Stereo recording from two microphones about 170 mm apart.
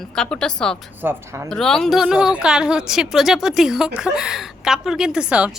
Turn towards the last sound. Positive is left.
turn(degrees=-5)  # may be behind; listen again after turning